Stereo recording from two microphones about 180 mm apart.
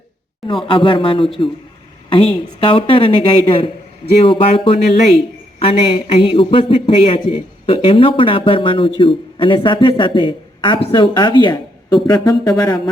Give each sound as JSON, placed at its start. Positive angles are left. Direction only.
{"t": 0.4, "sound": "a man's voice", "side_deg": 30}